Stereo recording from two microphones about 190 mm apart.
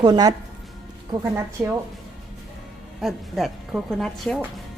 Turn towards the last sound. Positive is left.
turn(degrees=0)  # may be behind; listen again after turning